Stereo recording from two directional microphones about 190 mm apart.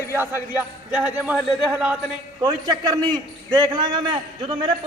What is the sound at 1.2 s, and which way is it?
Speech, 5° right (ahead or behind).